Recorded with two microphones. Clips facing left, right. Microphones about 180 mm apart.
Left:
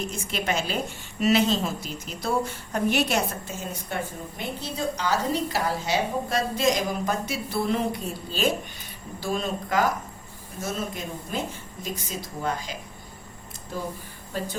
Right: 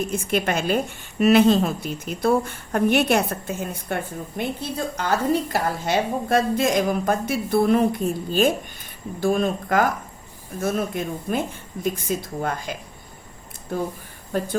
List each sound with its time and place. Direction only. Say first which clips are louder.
0.1 s a woman's voice: right 6 dB; 55° right (ahead or behind)